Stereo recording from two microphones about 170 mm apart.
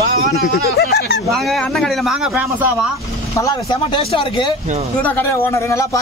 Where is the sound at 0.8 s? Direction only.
80° left.